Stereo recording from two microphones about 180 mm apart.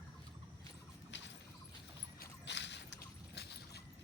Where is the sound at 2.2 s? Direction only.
75° left (ahead or behind).